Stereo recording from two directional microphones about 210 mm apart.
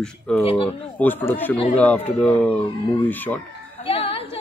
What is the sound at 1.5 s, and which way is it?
Speech, 25° left (ahead or behind).